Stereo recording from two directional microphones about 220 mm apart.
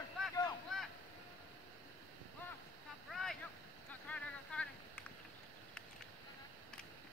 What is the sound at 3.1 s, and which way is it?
Boat, centre (ahead or behind).